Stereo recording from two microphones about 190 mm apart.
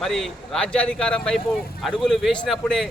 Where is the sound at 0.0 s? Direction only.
Centre (ahead or behind).